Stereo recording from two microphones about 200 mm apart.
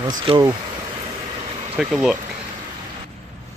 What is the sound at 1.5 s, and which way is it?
Vehicle, 25° right (ahead or behind).